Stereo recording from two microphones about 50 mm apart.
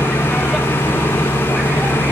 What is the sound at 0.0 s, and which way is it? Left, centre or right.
Vehicle, left.